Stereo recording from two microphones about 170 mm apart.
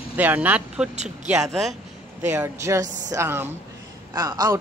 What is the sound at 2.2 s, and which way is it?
A man's voice, 15° right (ahead or behind).